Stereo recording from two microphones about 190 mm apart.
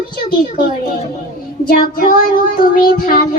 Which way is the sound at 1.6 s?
50° left (ahead or behind).